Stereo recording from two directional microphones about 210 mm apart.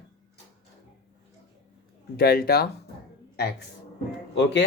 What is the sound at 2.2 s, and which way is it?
Speech, 45° left (ahead or behind).